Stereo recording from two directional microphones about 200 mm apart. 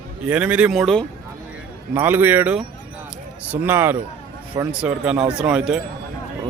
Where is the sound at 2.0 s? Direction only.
10° right (ahead or behind).